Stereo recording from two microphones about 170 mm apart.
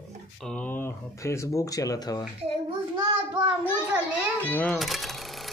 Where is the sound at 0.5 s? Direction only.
10° left (ahead or behind).